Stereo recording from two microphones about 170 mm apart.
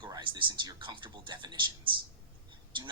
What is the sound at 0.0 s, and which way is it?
Speech, 30° right (ahead or behind).